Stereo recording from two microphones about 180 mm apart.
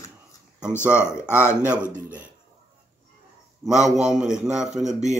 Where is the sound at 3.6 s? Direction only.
5° right (ahead or behind).